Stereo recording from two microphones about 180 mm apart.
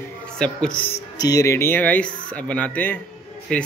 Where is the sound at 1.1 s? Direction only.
20° left (ahead or behind).